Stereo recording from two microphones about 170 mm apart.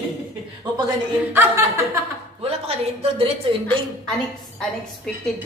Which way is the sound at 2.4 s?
35° right (ahead or behind).